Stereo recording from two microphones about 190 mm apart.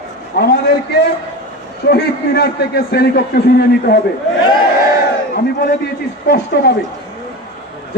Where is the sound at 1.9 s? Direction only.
55° left (ahead or behind).